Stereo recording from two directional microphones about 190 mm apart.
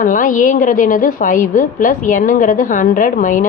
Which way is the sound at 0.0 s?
45° left (ahead or behind).